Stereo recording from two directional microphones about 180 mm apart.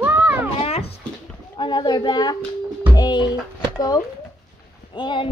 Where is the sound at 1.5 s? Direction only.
25° left (ahead or behind).